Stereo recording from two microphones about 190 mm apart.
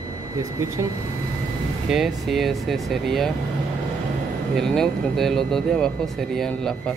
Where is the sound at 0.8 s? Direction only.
15° right (ahead or behind).